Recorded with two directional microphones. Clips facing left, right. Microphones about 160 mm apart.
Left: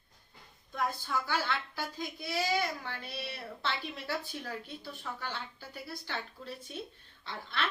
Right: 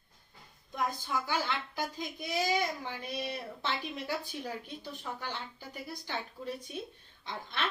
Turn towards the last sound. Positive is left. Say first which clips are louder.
# left 1 dB
turn(degrees=-20)  # may be behind; listen again after turning